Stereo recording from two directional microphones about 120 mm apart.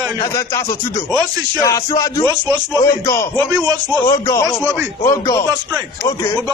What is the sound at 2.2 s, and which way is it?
Speech, 30° right (ahead or behind).